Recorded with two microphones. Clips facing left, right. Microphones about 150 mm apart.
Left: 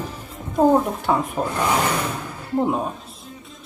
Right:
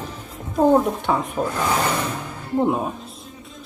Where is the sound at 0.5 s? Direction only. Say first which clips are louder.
Even; centre (ahead or behind).